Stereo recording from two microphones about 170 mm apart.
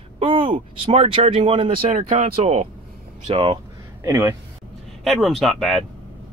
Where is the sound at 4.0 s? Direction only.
15° right (ahead or behind).